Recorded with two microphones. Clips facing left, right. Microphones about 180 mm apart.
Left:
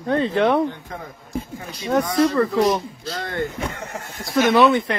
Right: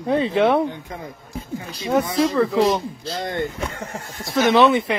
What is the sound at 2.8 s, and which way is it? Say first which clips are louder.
Speech: right 1 dB; 30° right (ahead or behind).